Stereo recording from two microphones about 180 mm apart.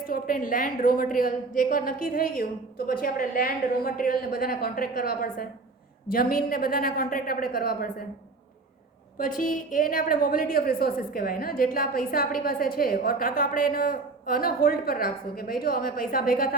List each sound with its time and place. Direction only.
0.0 s a woman's voice: 50° left (ahead or behind)
9.1 s a woman's voice: 50° left (ahead or behind)